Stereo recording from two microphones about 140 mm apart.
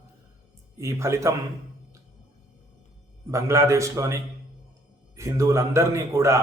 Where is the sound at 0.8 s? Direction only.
20° right (ahead or behind).